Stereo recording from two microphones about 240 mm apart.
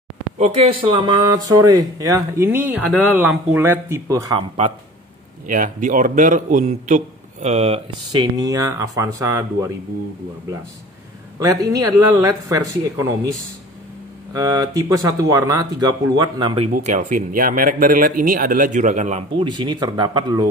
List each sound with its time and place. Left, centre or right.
0.4 s a man's voice: right
11.3 s speech: centre
14.3 s speech: centre
16.7 s a man's voice: right